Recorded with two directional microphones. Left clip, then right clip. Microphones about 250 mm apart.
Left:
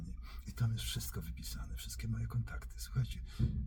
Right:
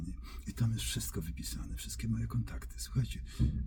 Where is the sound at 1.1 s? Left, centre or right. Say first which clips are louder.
Right 5 dB; centre.